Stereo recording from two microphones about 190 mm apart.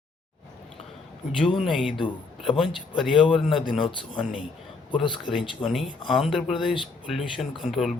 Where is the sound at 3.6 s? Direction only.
25° left (ahead or behind).